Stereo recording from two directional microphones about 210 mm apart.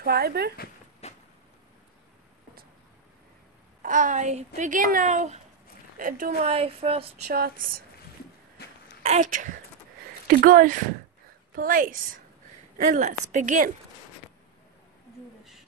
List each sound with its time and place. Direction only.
0.0 s speech: 45° right (ahead or behind)
1.0 s a sound: 30° left (ahead or behind)
3.8 s a woman's voice: 40° right (ahead or behind)
6.4 s speech: 30° right (ahead or behind)
7.3 s speech: 45° right (ahead or behind)
8.6 s a sound: 50° left (ahead or behind)
9.0 s a woman's voice: 35° right (ahead or behind)